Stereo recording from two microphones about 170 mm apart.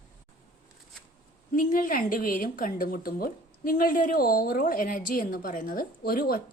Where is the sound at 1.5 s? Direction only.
50° left (ahead or behind).